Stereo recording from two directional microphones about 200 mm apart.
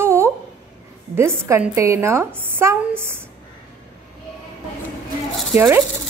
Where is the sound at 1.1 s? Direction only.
10° right (ahead or behind).